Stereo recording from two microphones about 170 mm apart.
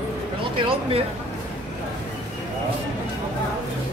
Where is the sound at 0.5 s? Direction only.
30° right (ahead or behind).